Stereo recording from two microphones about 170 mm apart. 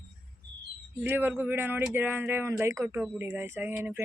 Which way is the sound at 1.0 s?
10° right (ahead or behind).